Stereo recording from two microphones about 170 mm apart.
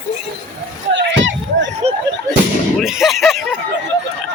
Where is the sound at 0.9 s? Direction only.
90° right.